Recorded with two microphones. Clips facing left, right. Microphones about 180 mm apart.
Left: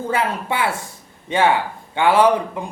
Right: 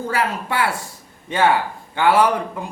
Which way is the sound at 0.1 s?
25° left (ahead or behind).